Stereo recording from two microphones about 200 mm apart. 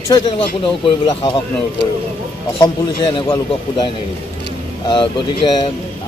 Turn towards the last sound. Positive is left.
turn(degrees=25)  # may be behind; listen again after turning